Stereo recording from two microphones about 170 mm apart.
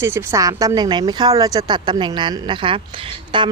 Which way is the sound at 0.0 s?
15° right (ahead or behind).